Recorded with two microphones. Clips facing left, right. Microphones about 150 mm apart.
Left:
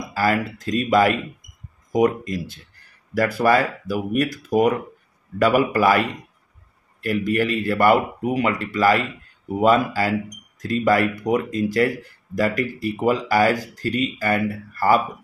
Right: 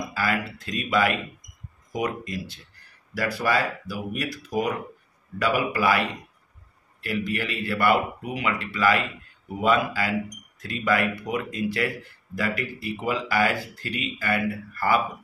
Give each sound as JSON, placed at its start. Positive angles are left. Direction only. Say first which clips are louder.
{"t": 0.1, "sound": "speech", "louder": "left 8 dB", "side_deg": 40}